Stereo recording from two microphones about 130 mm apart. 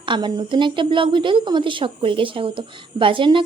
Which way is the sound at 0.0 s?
40° right (ahead or behind).